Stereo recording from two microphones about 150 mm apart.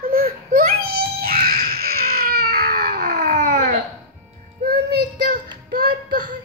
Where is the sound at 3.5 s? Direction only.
50° right (ahead or behind).